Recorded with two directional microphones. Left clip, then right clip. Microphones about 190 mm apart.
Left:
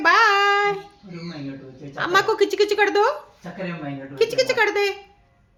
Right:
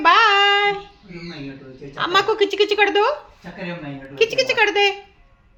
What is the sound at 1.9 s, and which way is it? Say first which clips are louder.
Speech: right 1 dB; 10° left (ahead or behind).